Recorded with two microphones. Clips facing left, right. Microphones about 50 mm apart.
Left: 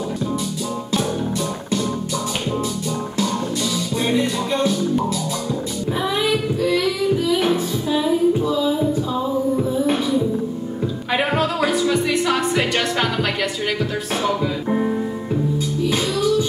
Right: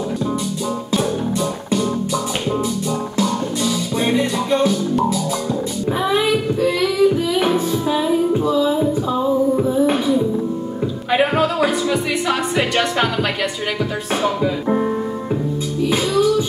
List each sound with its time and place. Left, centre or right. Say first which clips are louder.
3.2 s music: right 2 dB; centre
6.0 s child singing: right 3 dB; centre
7.3 s music: right 2 dB; centre
14.2 s music: right 3 dB; centre